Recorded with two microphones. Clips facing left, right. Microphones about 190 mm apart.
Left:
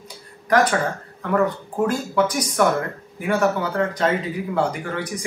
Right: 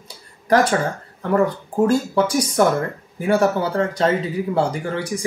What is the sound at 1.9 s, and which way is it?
Speech, 30° right (ahead or behind).